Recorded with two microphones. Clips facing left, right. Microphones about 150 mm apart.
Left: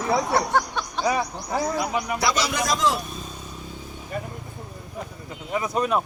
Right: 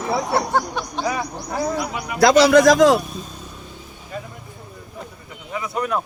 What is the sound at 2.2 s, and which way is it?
Speech, 60° right (ahead or behind).